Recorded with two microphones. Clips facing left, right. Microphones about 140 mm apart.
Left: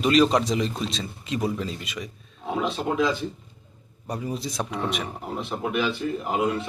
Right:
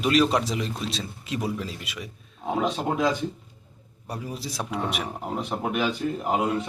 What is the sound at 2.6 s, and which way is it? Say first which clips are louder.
Speech: left 2 dB; 40° right (ahead or behind).